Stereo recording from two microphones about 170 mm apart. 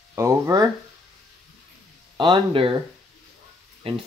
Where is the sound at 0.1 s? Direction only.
20° right (ahead or behind).